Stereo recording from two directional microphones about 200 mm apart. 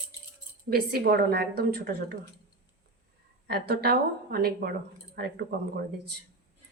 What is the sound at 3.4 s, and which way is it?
A woman's voice, 50° right (ahead or behind).